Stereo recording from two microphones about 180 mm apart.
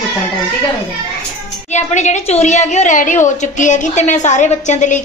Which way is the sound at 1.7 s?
40° left (ahead or behind).